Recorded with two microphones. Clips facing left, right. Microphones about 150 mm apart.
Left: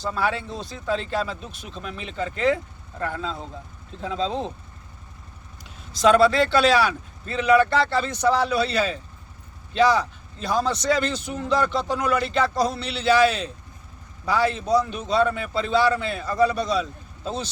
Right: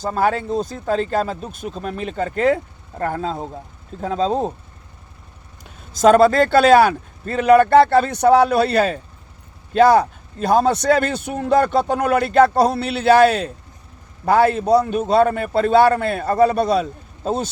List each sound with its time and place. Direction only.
0.0 s a man's voice: 45° right (ahead or behind)
5.6 s a man's voice: 45° right (ahead or behind)